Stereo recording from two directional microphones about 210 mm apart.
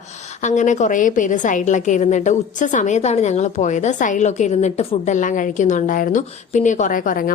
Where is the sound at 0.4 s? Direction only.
35° left (ahead or behind).